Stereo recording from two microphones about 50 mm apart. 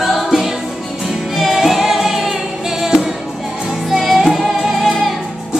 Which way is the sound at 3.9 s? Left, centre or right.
Centre.